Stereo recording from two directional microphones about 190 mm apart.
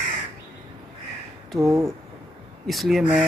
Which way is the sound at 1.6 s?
15° right (ahead or behind).